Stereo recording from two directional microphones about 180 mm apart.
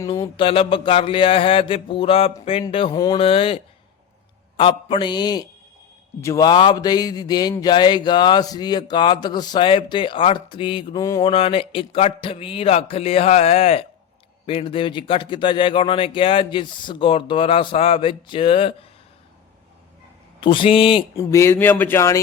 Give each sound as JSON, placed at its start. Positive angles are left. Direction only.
{"t": 0.0, "sound": "a sound", "side_deg": 15}
{"t": 0.3, "sound": "speech", "side_deg": 30}
{"t": 11.3, "sound": "a man's voice", "side_deg": 30}
{"t": 20.4, "sound": "speech", "side_deg": 30}
{"t": 21.2, "sound": "speech", "side_deg": 15}